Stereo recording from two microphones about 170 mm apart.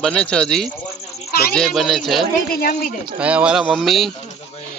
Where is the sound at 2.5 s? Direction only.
60° left (ahead or behind).